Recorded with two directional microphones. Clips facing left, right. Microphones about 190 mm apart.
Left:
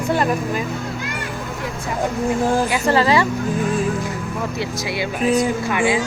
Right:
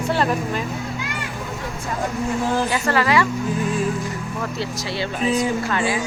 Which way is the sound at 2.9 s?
25° left (ahead or behind).